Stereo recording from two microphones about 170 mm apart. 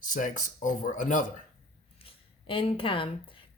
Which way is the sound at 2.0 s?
30° left (ahead or behind).